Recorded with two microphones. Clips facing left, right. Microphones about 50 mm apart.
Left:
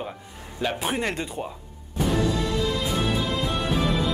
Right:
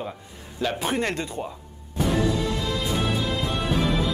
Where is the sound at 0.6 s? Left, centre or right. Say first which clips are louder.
Right 1 dB; centre.